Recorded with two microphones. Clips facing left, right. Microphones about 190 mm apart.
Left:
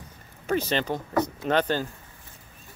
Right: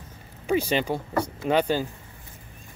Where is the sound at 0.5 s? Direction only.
10° right (ahead or behind).